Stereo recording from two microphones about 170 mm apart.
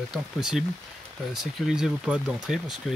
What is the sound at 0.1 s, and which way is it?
Speech, centre (ahead or behind).